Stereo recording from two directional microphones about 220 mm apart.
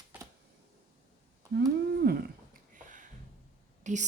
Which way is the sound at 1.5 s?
45° right (ahead or behind).